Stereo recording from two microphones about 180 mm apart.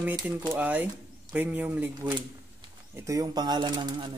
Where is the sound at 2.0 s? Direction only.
25° right (ahead or behind).